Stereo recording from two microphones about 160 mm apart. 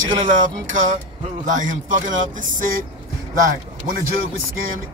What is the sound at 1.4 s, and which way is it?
A man's voice, 55° right (ahead or behind).